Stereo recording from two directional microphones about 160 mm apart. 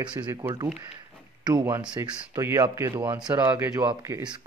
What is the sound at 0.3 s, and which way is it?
Speech, 25° right (ahead or behind).